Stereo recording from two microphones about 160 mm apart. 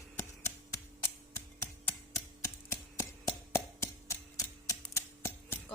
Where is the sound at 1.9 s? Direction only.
15° left (ahead or behind).